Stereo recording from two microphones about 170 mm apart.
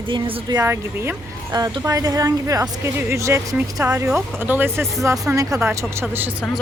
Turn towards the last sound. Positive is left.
turn(degrees=-10)  # may be behind; listen again after turning